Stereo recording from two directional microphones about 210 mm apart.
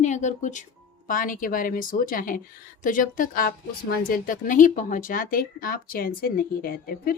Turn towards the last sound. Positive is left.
turn(degrees=45)  # may be behind; listen again after turning